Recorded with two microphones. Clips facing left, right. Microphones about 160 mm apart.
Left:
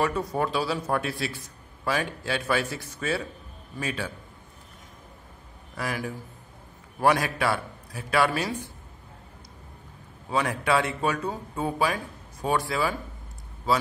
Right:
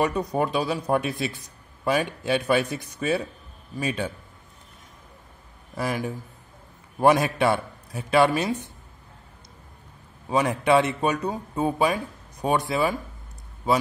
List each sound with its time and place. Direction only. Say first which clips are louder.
0.0 s a man's voice: right 2 dB; 15° right (ahead or behind)
5.8 s speech: right 4 dB; 25° right (ahead or behind)
10.3 s speech: right 5 dB; 20° right (ahead or behind)